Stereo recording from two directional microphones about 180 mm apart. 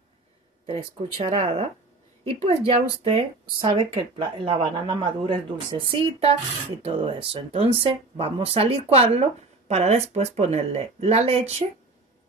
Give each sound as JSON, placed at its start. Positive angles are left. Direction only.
{"t": 0.7, "sound": "speech", "side_deg": -30}